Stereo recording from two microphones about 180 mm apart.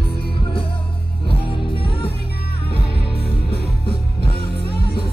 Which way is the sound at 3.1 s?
30° left (ahead or behind).